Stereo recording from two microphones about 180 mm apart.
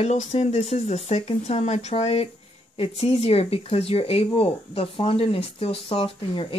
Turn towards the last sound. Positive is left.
turn(degrees=30)  # may be behind; listen again after turning